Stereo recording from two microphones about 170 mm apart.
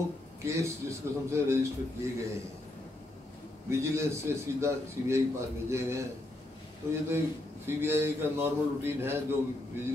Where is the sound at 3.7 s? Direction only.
15° right (ahead or behind).